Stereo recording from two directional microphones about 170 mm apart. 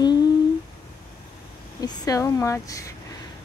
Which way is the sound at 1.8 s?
20° left (ahead or behind).